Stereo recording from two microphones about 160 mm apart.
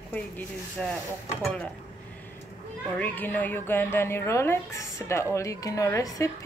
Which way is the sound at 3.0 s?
10° left (ahead or behind).